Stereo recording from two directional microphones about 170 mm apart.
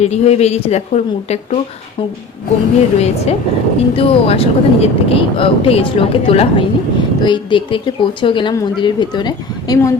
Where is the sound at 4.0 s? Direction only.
35° left (ahead or behind).